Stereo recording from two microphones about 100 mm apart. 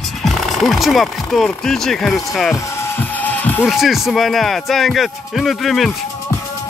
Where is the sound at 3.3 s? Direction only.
15° left (ahead or behind).